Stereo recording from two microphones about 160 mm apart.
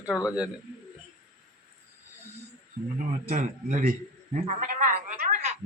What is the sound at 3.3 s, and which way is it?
A man's voice, 55° right (ahead or behind).